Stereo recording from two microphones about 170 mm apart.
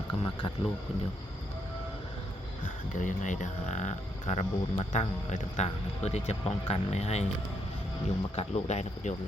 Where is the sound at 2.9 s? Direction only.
45° left (ahead or behind).